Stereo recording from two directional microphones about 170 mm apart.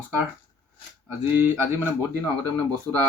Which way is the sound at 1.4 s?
10° right (ahead or behind).